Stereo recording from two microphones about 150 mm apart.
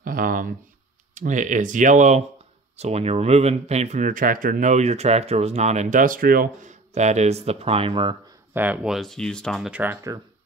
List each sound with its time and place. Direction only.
0.0 s speech: 70° right (ahead or behind)
1.1 s speech: 55° right (ahead or behind); by 8.2 s 35° right (ahead or behind)
8.5 s speech: 10° right (ahead or behind)